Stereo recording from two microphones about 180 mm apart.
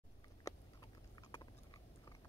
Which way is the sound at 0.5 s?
15° left (ahead or behind).